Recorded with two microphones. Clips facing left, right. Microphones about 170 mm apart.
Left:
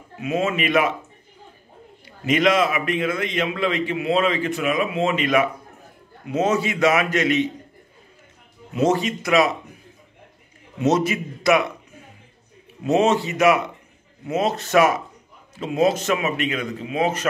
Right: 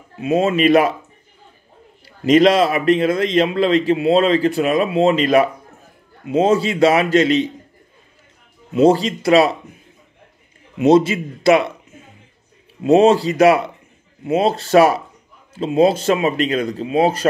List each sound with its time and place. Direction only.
0.2 s a man's voice: 35° right (ahead or behind)
2.0 s a man's voice: 35° right (ahead or behind)
8.7 s a man's voice: 30° right (ahead or behind)
10.9 s a man's voice: 30° right (ahead or behind)